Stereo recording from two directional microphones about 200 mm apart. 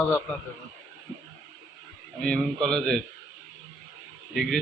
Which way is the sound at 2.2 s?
5° left (ahead or behind).